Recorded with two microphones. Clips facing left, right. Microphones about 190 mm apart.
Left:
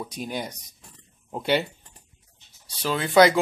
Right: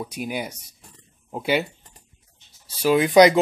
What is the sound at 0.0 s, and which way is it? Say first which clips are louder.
Speech: right 2 dB; 10° right (ahead or behind).